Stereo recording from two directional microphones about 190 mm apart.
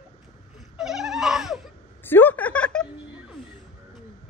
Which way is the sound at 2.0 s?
10° left (ahead or behind).